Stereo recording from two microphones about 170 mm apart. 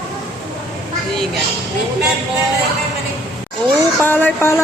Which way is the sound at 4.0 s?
10° left (ahead or behind).